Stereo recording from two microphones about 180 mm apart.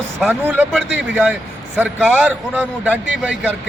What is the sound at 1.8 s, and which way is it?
A man's voice, 10° right (ahead or behind).